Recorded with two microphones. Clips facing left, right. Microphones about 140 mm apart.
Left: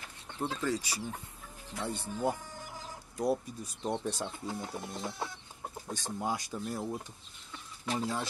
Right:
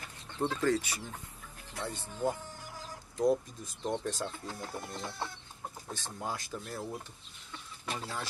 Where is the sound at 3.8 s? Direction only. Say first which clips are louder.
Even; 10° left (ahead or behind).